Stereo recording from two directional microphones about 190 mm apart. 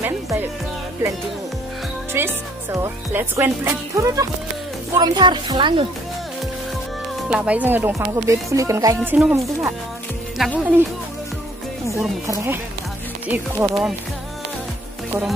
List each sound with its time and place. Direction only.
0.0 s music: 10° right (ahead or behind)
2.1 s speech: 15° right (ahead or behind)
7.2 s speech: 5° right (ahead or behind)
13.3 s speech: 10° right (ahead or behind)